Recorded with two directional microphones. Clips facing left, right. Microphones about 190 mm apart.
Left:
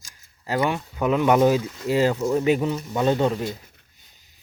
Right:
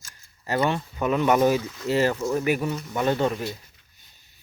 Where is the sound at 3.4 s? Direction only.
50° left (ahead or behind).